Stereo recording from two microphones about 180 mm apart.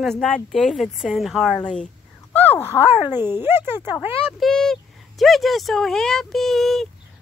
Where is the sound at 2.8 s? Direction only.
10° right (ahead or behind).